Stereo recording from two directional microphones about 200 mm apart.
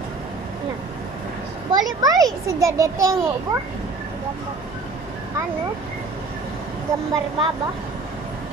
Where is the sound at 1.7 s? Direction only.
20° right (ahead or behind).